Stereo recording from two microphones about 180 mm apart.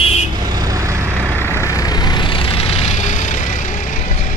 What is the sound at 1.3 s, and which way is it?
Vehicle, 15° left (ahead or behind).